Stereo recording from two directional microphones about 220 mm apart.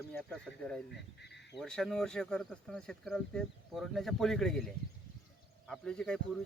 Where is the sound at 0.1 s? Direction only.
5° left (ahead or behind).